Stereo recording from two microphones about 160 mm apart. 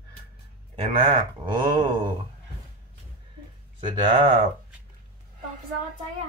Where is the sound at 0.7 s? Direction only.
45° right (ahead or behind).